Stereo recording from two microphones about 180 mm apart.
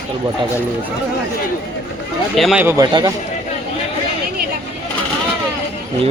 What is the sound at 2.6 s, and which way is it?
Speech, 15° right (ahead or behind).